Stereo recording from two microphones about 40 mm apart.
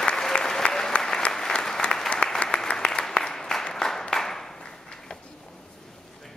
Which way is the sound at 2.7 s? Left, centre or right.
Left.